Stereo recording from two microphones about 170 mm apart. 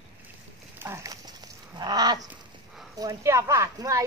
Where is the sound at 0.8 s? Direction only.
15° right (ahead or behind).